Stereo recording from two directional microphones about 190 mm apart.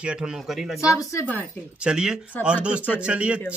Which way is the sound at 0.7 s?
15° left (ahead or behind).